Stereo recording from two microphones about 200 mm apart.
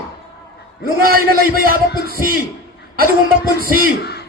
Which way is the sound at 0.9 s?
50° right (ahead or behind).